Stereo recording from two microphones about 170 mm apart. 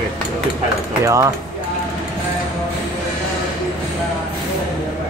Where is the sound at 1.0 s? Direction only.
20° right (ahead or behind).